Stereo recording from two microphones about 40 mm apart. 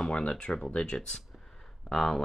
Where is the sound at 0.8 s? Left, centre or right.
Centre.